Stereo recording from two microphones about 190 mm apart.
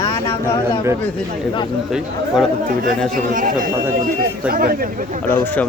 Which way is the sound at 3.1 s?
45° right (ahead or behind).